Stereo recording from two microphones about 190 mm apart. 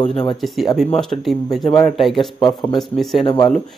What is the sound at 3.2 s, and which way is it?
Speech, 25° left (ahead or behind).